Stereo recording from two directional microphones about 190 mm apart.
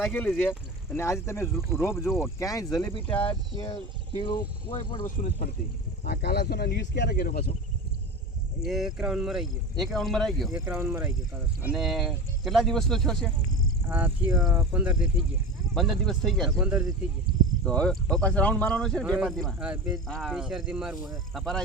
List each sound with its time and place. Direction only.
0.0 s speech: 10° left (ahead or behind); by 5.0 s 25° left (ahead or behind)
5.0 s speech: 40° left (ahead or behind)
6.1 s speech: 55° left (ahead or behind)
8.6 s speech: centre (ahead or behind)
10.7 s speech: 10° right (ahead or behind)
11.7 s speech: centre (ahead or behind)
13.8 s speech: 10° right (ahead or behind)
14.3 s speech: centre (ahead or behind)
14.5 s speech: 10° right (ahead or behind)